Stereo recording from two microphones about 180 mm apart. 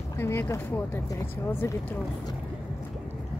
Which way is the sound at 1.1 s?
15° left (ahead or behind).